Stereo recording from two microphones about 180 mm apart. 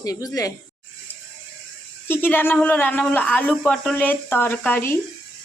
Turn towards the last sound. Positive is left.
turn(degrees=10)  # may be behind; listen again after turning